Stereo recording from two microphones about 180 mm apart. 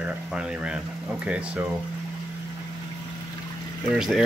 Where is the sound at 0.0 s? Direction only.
5° right (ahead or behind).